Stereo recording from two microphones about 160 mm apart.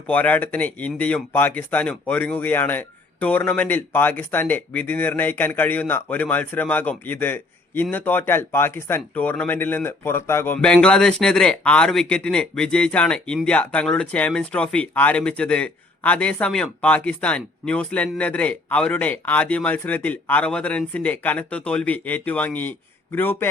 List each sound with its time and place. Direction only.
0.1 s speech: 10° left (ahead or behind)